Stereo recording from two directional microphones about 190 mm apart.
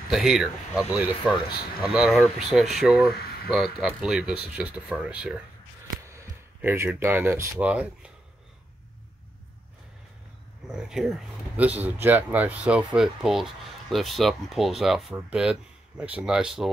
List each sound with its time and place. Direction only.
0.1 s speech: centre (ahead or behind)
10.7 s speech: centre (ahead or behind)